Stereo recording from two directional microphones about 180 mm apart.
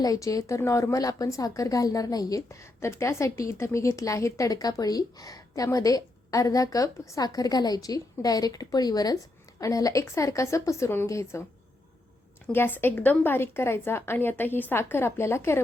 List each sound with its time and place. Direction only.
0.0 s a woman's voice: 20° left (ahead or behind)
12.5 s a woman's voice: 10° left (ahead or behind)